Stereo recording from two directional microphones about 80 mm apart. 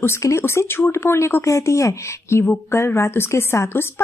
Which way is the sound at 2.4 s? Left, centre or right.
Left.